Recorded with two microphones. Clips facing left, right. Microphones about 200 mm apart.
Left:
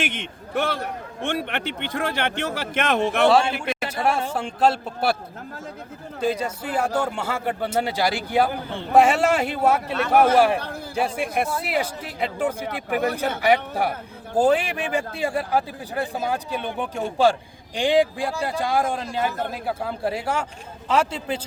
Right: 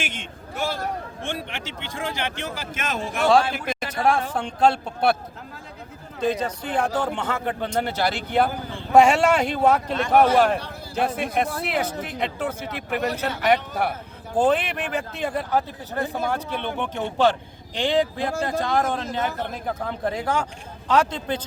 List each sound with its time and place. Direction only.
0.0 s speech: 60° left (ahead or behind)
3.2 s a man's voice: 5° left (ahead or behind)
6.1 s a man's voice: 10° left (ahead or behind)
12.2 s a man's voice: 10° left (ahead or behind)
12.6 s speech: 55° left (ahead or behind)
13.4 s a man's voice: 10° left (ahead or behind)